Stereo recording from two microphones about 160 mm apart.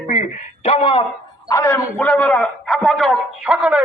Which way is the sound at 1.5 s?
20° left (ahead or behind).